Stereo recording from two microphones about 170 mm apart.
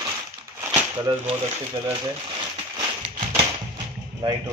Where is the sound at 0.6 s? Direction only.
10° right (ahead or behind).